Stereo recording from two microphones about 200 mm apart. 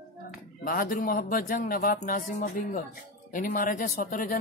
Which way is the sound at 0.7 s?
45° left (ahead or behind).